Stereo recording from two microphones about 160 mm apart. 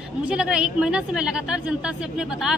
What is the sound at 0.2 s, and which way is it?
A woman's voice, 5° right (ahead or behind).